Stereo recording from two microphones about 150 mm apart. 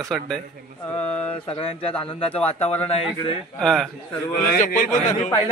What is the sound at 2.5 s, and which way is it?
Speech, 45° left (ahead or behind).